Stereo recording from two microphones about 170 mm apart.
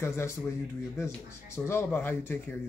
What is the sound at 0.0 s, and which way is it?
Speech, 15° left (ahead or behind).